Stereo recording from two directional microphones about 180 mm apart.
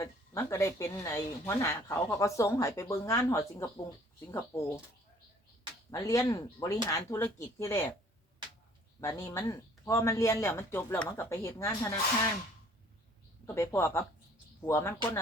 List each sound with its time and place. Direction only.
0.0 s speech: 15° left (ahead or behind)
5.9 s speech: 20° left (ahead or behind)
9.0 s speech: 15° left (ahead or behind)
13.5 s speech: 15° left (ahead or behind)